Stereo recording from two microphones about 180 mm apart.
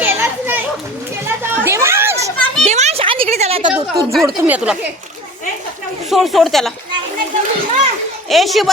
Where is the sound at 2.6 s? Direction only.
40° right (ahead or behind).